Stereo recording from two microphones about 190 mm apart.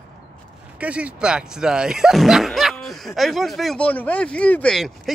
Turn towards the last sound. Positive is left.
turn(degrees=5)  # may be behind; listen again after turning